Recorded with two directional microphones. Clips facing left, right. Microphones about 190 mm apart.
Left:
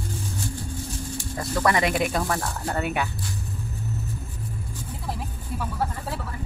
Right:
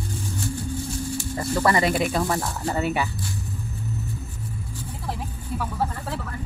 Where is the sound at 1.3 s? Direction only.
5° right (ahead or behind).